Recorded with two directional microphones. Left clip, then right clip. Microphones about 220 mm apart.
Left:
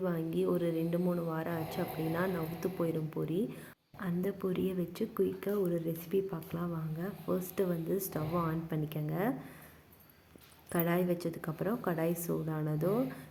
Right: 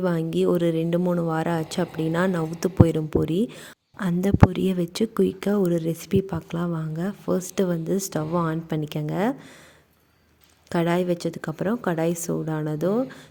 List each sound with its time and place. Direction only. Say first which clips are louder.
0.0 s a woman's voice: right 10 dB; 45° right (ahead or behind)
10.7 s a woman's voice: right 9 dB; 40° right (ahead or behind)